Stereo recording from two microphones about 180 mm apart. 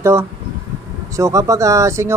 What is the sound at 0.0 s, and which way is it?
Speech, 15° right (ahead or behind).